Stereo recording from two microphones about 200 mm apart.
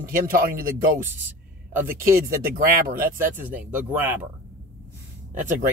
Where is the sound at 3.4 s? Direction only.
10° right (ahead or behind).